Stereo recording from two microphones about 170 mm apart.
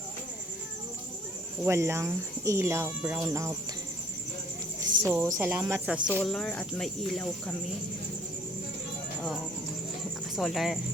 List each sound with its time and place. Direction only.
1.6 s speech: 15° right (ahead or behind)
5.0 s speech: 15° right (ahead or behind); by 7.5 s 5° left (ahead or behind)
10.3 s speech: centre (ahead or behind)